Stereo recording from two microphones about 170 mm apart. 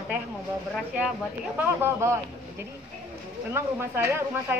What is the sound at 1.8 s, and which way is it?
Speech, 15° right (ahead or behind).